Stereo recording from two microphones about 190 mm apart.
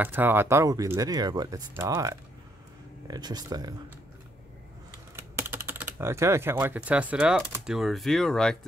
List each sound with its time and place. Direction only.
0.0 s speech: 10° right (ahead or behind)
5.1 s speech: 10° right (ahead or behind)